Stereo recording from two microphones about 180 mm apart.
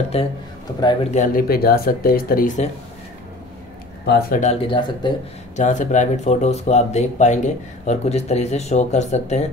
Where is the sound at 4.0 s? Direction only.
65° left (ahead or behind).